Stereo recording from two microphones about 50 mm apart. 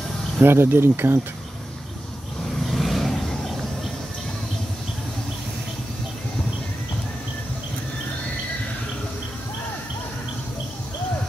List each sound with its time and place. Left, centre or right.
0.4 s speech: right
2.6 s vehicle: centre